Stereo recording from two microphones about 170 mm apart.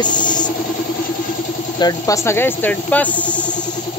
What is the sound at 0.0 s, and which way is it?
Vehicle, 25° left (ahead or behind).